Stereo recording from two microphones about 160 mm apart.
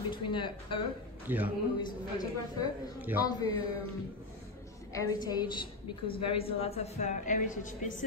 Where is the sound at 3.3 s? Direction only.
25° left (ahead or behind).